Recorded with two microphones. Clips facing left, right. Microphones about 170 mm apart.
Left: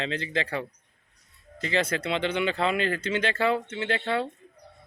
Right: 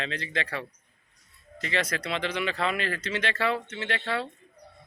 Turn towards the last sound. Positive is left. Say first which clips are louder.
# left 3 dB
turn(degrees=25)  # may be behind; listen again after turning